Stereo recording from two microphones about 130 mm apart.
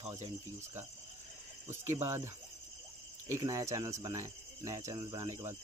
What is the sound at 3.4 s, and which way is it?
Speech, 25° right (ahead or behind).